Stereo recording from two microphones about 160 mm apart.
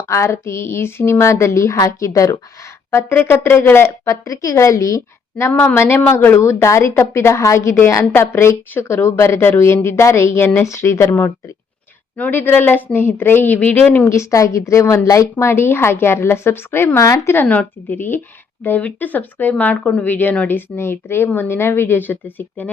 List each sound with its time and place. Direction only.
0.1 s a woman's voice: 15° left (ahead or behind)